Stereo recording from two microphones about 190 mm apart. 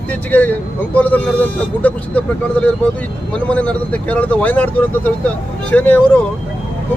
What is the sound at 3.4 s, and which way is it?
Speech, 5° left (ahead or behind).